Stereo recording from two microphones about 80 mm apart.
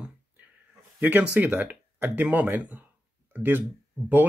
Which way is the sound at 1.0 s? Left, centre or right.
Right.